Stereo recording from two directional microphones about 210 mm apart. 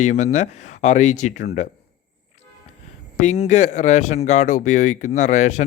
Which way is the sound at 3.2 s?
30° left (ahead or behind).